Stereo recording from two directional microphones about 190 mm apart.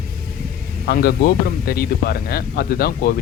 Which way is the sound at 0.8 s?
55° left (ahead or behind).